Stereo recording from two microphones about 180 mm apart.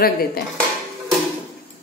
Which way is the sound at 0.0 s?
55° left (ahead or behind).